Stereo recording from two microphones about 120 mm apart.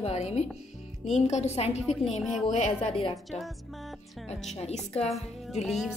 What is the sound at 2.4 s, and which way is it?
Speech, 60° left (ahead or behind).